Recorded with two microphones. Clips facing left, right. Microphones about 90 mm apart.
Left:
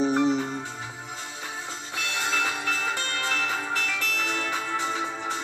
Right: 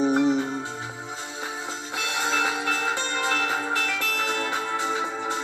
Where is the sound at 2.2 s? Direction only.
25° right (ahead or behind).